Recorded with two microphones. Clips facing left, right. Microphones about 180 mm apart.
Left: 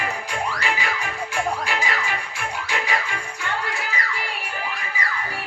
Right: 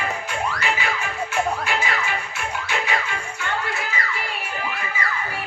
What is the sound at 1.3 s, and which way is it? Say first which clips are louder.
Music: right 2 dB; 35° left (ahead or behind).